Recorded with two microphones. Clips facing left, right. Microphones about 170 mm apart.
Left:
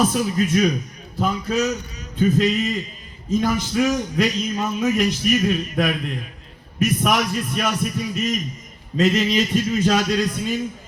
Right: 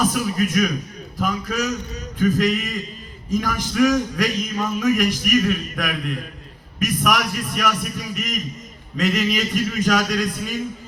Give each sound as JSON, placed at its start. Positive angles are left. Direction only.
{"t": 0.1, "sound": "a man's voice", "side_deg": 30}